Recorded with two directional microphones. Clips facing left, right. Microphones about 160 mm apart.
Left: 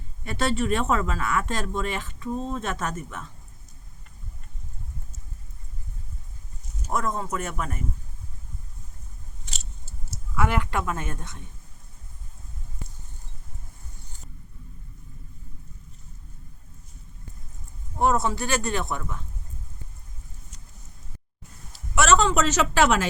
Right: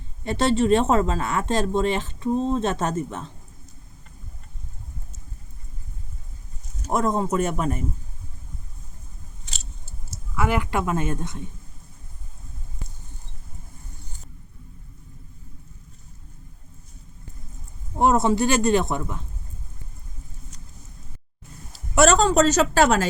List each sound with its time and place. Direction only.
0.3 s speech: 25° right (ahead or behind)
6.9 s speech: 25° right (ahead or behind)
10.3 s speech: 5° right (ahead or behind)
17.9 s speech: 20° right (ahead or behind)
21.7 s speech: 35° right (ahead or behind)